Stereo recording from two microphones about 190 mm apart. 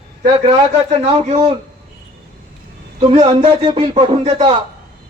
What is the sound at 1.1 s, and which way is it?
Speech, 30° right (ahead or behind).